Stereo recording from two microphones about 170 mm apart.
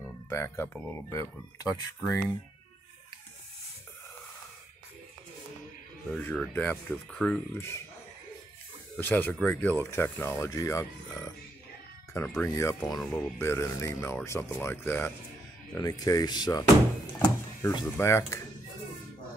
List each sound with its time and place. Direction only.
0.3 s speech: 15° left (ahead or behind)
6.0 s speech: 5° left (ahead or behind)
7.5 s speech: 15° left (ahead or behind)
8.9 s speech: 10° left (ahead or behind)